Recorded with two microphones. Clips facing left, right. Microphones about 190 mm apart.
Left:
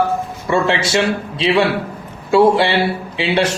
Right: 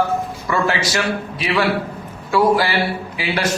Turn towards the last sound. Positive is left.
turn(degrees=25)  # may be behind; listen again after turning